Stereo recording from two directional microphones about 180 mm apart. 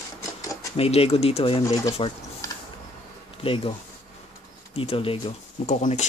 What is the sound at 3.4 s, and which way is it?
Speech, 30° left (ahead or behind).